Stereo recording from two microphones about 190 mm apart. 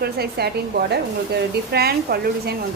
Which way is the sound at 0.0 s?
55° right (ahead or behind).